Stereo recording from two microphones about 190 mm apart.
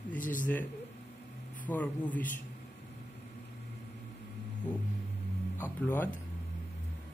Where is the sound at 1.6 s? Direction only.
10° left (ahead or behind).